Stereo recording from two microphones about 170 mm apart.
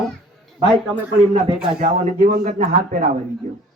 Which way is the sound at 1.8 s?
40° right (ahead or behind).